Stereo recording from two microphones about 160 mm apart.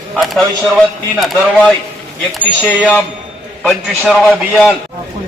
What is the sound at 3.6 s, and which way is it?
A man's voice, centre (ahead or behind).